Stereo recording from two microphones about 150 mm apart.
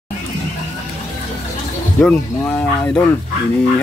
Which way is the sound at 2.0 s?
10° left (ahead or behind).